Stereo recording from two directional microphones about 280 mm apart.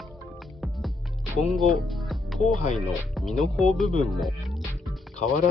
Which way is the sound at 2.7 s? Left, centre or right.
Centre.